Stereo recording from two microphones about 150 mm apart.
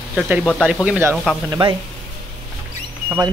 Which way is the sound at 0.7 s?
5° right (ahead or behind).